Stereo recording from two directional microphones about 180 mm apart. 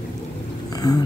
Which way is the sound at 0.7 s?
20° left (ahead or behind).